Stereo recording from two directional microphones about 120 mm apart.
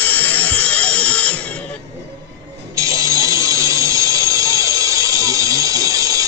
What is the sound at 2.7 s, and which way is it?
Mechanisms, 25° right (ahead or behind).